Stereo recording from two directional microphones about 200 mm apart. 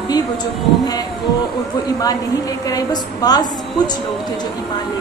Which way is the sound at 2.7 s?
20° left (ahead or behind).